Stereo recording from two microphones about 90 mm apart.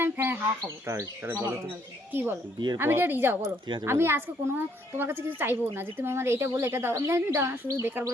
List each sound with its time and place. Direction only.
0.0 s bird: 25° right (ahead or behind)
0.9 s a woman's voice: 30° right (ahead or behind)